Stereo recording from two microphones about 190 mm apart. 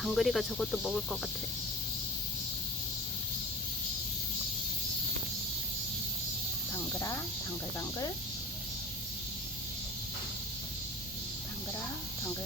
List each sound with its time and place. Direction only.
0.0 s speech: centre (ahead or behind)
7.8 s speech: 20° left (ahead or behind)